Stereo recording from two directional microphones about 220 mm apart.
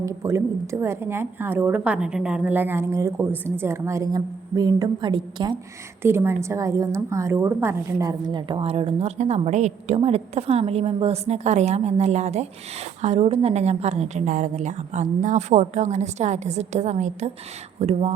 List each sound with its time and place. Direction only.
0.0 s a woman's voice: 15° right (ahead or behind); by 18.1 s 30° right (ahead or behind)